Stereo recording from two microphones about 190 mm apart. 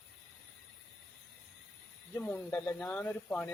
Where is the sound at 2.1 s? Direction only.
5° left (ahead or behind).